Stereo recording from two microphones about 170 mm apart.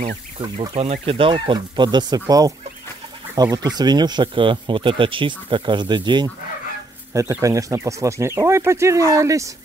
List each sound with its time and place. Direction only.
0.4 s speech: 35° right (ahead or behind)
3.5 s speech: 25° right (ahead or behind)